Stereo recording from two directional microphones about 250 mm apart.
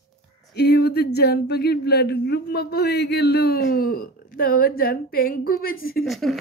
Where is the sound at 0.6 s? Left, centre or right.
Left.